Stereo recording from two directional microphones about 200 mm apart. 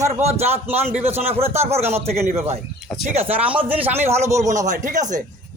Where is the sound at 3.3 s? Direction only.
5° right (ahead or behind).